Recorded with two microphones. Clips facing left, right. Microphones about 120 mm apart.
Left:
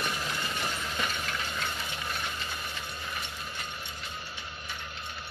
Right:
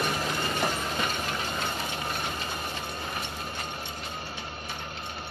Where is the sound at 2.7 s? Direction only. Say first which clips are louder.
Right 4 dB; 45° right (ahead or behind).